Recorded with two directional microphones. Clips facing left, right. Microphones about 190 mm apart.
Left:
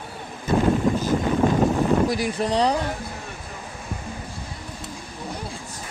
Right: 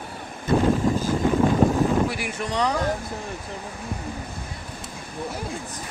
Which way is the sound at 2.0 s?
35° left (ahead or behind).